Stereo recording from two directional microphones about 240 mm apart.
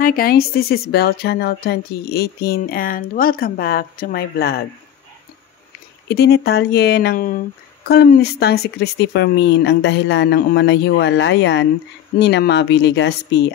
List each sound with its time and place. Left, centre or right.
0.0 s speech: left
6.0 s speech: left